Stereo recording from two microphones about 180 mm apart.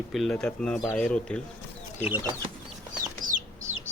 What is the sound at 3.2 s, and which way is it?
Chicken, 50° right (ahead or behind).